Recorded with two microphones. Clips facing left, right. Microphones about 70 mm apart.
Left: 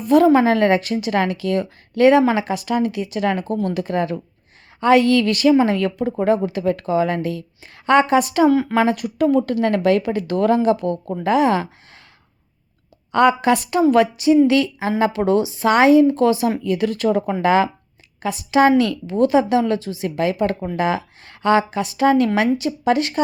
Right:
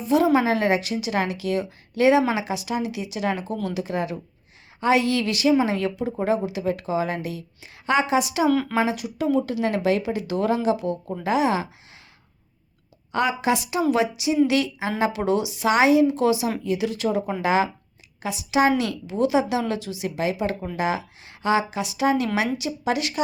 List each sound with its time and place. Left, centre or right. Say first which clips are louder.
0.0 s a woman's voice: left 6 dB; left
13.1 s a woman's voice: left 7 dB; left
14.9 s a woman's voice: left 5 dB; left
20.1 s a woman's voice: left 5 dB; left